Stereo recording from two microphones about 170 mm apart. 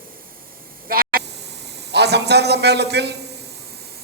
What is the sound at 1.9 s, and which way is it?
A man's voice, 80° right.